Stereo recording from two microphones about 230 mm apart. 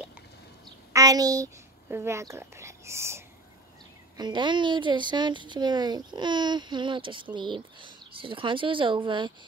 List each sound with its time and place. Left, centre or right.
0.9 s a child's voice: centre